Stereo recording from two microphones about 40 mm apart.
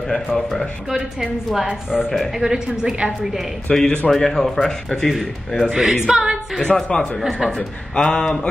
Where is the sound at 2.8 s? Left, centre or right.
Right.